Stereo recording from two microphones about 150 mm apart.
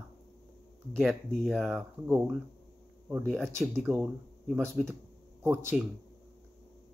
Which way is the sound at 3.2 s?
5° left (ahead or behind).